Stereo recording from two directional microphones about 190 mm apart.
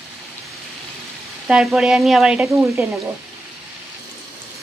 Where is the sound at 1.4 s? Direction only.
5° right (ahead or behind).